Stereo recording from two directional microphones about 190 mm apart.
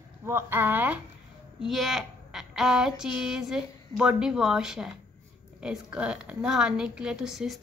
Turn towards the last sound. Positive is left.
turn(degrees=0)  # may be behind; listen again after turning